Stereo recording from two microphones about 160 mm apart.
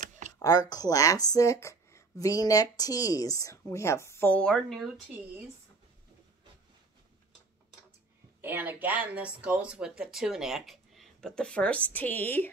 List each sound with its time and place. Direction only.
0.4 s speech: 25° left (ahead or behind); by 4.9 s centre (ahead or behind)
8.4 s speech: 15° right (ahead or behind); by 12.4 s 10° left (ahead or behind)